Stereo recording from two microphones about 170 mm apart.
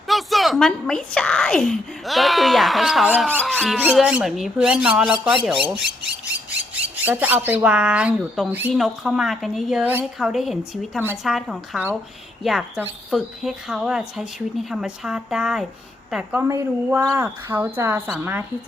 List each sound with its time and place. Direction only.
0.1 s a woman's voice: centre (ahead or behind)
6.5 s a woman's voice: 10° right (ahead or behind)